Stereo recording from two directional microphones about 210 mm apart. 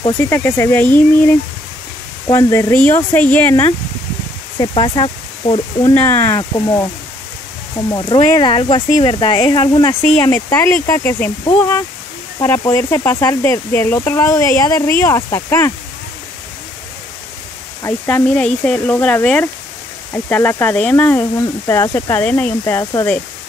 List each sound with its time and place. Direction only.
0.2 s speech: 10° left (ahead or behind)
2.2 s speech: 15° left (ahead or behind)
4.6 s speech: 20° left (ahead or behind)
5.9 s speech: 10° left (ahead or behind)
7.9 s speech: 20° left (ahead or behind)
17.8 s speech: 5° left (ahead or behind)